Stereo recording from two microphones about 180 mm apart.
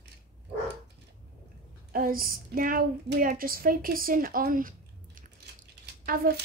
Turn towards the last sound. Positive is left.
turn(degrees=-55)  # may be behind; listen again after turning